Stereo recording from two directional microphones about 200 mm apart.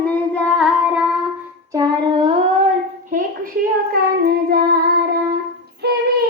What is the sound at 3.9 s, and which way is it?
Child singing, 50° right (ahead or behind).